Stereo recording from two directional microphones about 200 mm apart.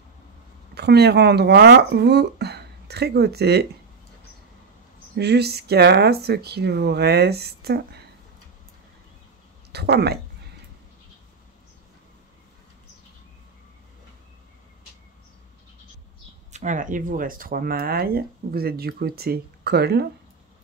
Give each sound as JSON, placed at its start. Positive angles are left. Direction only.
{"t": 0.7, "sound": "speech", "side_deg": -55}
{"t": 5.1, "sound": "speech", "side_deg": -55}
{"t": 9.7, "sound": "speech", "side_deg": -55}
{"t": 16.5, "sound": "speech", "side_deg": -40}